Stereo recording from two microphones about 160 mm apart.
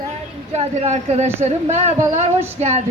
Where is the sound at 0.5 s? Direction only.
40° right (ahead or behind).